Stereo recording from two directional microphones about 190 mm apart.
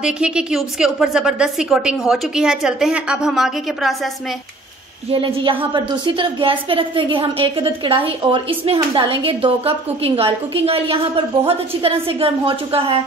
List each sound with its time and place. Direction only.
0.0 s a woman's voice: 5° right (ahead or behind)
5.1 s a woman's voice: 25° right (ahead or behind)